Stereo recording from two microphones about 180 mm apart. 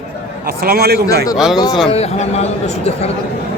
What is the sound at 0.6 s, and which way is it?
Speech, 60° right (ahead or behind).